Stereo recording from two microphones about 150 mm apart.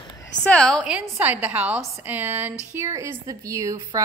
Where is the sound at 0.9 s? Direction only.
10° right (ahead or behind).